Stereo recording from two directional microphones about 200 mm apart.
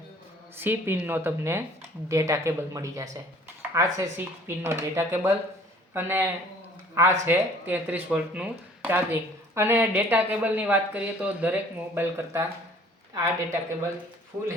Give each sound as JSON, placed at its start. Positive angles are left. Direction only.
{"t": 0.5, "sound": "speech", "side_deg": -10}